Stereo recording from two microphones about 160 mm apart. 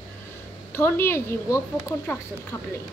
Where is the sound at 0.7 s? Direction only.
15° left (ahead or behind).